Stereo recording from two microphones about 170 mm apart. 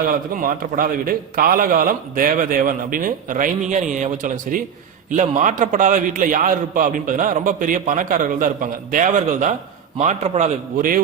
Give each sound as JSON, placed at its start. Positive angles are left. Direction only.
{"t": 0.3, "sound": "a man's voice", "side_deg": -55}